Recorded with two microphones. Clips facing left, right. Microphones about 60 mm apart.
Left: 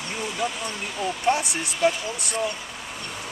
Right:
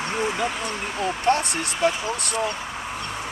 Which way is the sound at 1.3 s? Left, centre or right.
Centre.